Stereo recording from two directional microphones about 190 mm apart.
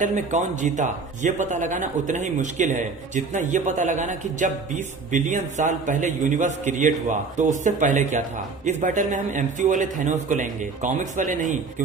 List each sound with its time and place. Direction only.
0.0 s a man's voice: 40° right (ahead or behind)